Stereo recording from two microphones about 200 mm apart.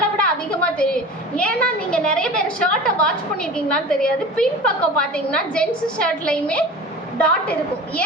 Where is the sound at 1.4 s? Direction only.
5° left (ahead or behind).